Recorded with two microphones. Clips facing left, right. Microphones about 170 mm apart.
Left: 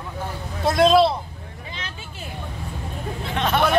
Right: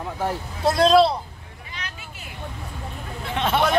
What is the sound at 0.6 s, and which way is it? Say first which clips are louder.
Speech: even; centre (ahead or behind).